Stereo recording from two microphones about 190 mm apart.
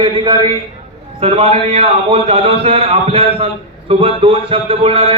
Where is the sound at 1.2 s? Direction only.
30° right (ahead or behind).